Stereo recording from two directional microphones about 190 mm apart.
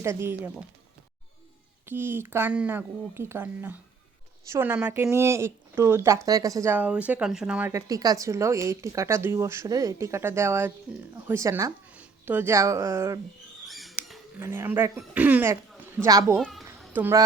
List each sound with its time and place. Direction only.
0.0 s speech: 15° right (ahead or behind)
1.9 s speech: 10° right (ahead or behind)
7.7 s speech: 15° right (ahead or behind)
13.7 s rodents: centre (ahead or behind)
14.3 s a child's voice: 15° right (ahead or behind)
16.4 s a child's voice: centre (ahead or behind)